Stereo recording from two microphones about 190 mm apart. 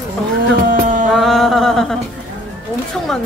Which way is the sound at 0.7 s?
45° right (ahead or behind).